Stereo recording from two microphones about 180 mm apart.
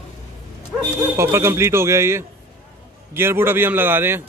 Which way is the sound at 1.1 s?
15° right (ahead or behind).